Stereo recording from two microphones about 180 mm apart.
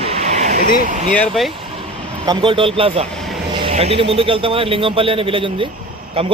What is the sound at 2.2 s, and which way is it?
A man's voice, 25° right (ahead or behind).